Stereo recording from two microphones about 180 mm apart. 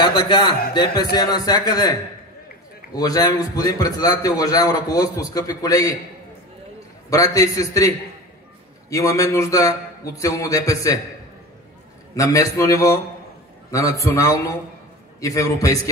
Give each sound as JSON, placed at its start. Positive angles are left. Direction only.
{"t": 0.0, "sound": "a man's voice", "side_deg": 25}
{"t": 3.0, "sound": "a man's voice", "side_deg": 20}
{"t": 7.1, "sound": "a man's voice", "side_deg": 20}
{"t": 8.9, "sound": "a man's voice", "side_deg": 15}
{"t": 12.2, "sound": "a man's voice", "side_deg": 20}